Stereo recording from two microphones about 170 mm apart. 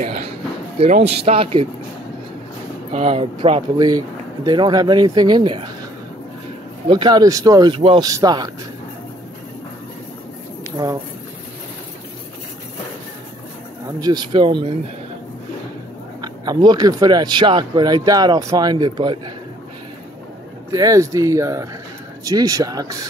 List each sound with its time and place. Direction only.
0.7 s a man's voice: 40° right (ahead or behind)
2.9 s a man's voice: 35° right (ahead or behind)
3.7 s speech: 20° right (ahead or behind)
6.9 s speech: 25° right (ahead or behind)
10.8 s speech: 20° right (ahead or behind)
14.0 s speech: 25° right (ahead or behind)
16.2 s speech: 25° right (ahead or behind)
20.7 s speech: 20° right (ahead or behind)